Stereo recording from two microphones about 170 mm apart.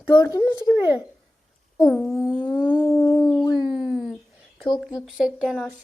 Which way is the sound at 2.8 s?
15° left (ahead or behind).